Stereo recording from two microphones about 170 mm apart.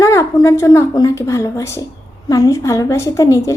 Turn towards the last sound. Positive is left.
turn(degrees=15)  # may be behind; listen again after turning